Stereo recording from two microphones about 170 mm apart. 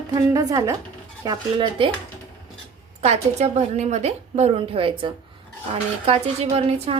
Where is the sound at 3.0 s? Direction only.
40° right (ahead or behind).